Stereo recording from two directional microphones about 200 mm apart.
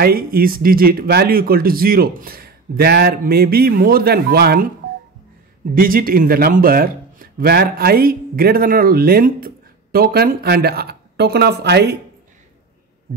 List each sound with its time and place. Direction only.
0.0 s speech: 50° right (ahead or behind)
5.8 s speech: 45° right (ahead or behind)